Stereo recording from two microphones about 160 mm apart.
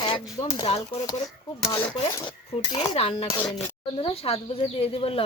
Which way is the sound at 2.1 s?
30° left (ahead or behind).